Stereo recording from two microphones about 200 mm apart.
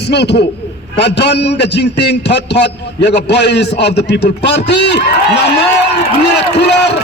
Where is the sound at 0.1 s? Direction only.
55° left (ahead or behind).